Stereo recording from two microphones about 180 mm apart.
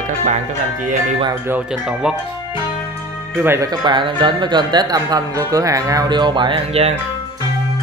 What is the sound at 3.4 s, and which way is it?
Speech, 15° right (ahead or behind).